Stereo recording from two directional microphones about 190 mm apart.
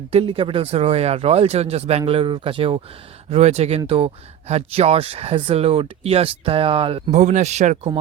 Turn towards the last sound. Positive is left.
turn(degrees=-35)  # may be behind; listen again after turning